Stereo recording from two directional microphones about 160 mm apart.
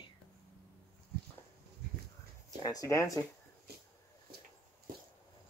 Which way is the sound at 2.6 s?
20° left (ahead or behind).